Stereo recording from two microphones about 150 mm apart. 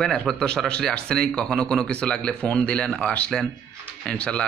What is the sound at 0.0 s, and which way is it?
A man's voice, 5° left (ahead or behind).